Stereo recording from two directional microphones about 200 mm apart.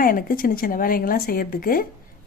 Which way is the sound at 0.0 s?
45° left (ahead or behind).